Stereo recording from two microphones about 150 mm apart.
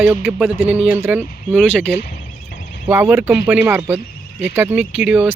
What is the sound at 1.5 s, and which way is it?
Speech, 5° left (ahead or behind).